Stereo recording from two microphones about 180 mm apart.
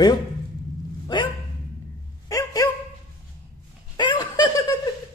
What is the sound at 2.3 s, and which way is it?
Dog, 20° left (ahead or behind).